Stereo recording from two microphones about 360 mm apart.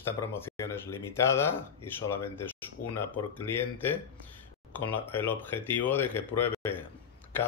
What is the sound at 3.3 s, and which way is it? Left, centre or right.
Speech, centre.